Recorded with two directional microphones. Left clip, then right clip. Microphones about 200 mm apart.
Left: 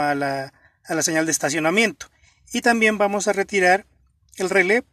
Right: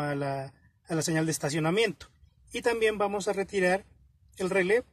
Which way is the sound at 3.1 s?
20° left (ahead or behind).